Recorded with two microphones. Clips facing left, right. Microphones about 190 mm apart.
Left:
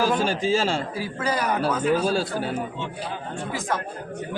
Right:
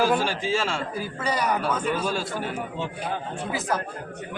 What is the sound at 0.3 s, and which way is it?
Speech, 35° left (ahead or behind).